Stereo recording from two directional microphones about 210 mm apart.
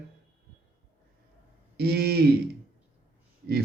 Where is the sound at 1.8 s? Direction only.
50° right (ahead or behind).